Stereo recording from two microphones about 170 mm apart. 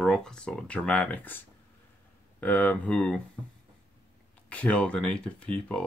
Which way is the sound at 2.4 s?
10° left (ahead or behind).